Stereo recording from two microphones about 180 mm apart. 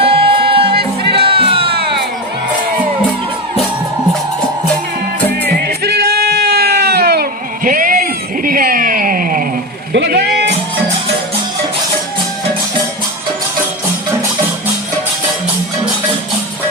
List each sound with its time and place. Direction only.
0.0 s music: 30° right (ahead or behind)
5.6 s goat: 65° right (ahead or behind)
8.4 s a sound: 50° right (ahead or behind)
9.9 s music: 70° right (ahead or behind)